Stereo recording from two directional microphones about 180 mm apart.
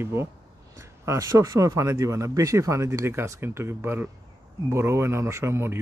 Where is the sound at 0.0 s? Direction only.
15° right (ahead or behind).